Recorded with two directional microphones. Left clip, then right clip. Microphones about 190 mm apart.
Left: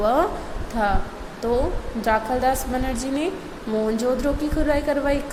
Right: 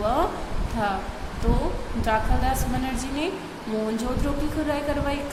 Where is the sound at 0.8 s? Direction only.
25° left (ahead or behind).